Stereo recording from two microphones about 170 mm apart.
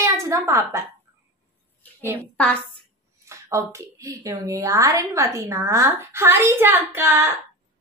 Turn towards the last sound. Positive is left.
turn(degrees=-15)  # may be behind; listen again after turning